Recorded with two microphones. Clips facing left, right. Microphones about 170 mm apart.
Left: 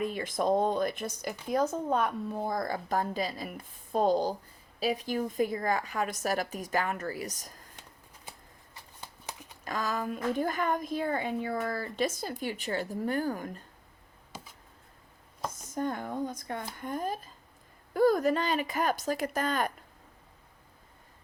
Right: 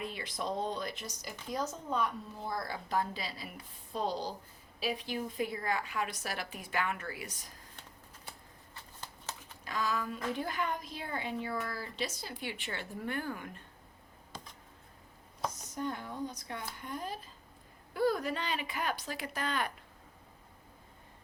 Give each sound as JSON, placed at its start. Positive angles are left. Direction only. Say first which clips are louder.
{"t": 0.0, "sound": "speech", "louder": "left 9 dB", "side_deg": 45}
{"t": 8.3, "sound": "shuffling cards", "louder": "left 2 dB", "side_deg": 15}
{"t": 9.6, "sound": "speech", "louder": "left 3 dB", "side_deg": 45}
{"t": 14.3, "sound": "a sound", "louder": "left 2 dB", "side_deg": 5}
{"t": 15.5, "sound": "speech", "louder": "left 5 dB", "side_deg": 50}